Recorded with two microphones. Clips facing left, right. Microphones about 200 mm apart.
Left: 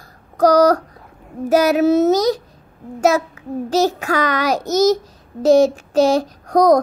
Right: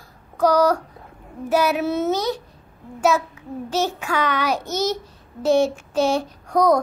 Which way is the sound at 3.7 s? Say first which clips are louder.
Left 6 dB; 40° left (ahead or behind).